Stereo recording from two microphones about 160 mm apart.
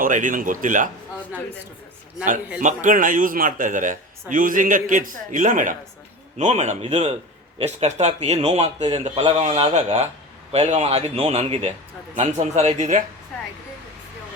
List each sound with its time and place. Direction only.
0.0 s a man's voice: 55° right (ahead or behind)
2.6 s a man's voice: 55° right (ahead or behind)